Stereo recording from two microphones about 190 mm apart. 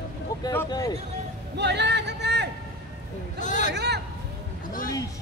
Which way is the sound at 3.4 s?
40° left (ahead or behind).